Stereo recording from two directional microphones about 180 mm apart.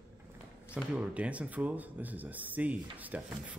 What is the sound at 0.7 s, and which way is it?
Speech, 5° right (ahead or behind).